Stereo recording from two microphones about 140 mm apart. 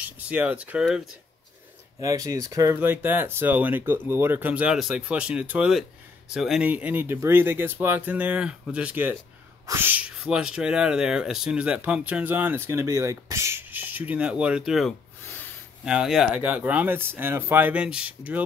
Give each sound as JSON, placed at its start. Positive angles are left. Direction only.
{"t": 0.3, "sound": "speech", "side_deg": -10}
{"t": 2.0, "sound": "speech", "side_deg": -25}
{"t": 2.8, "sound": "speech", "side_deg": -15}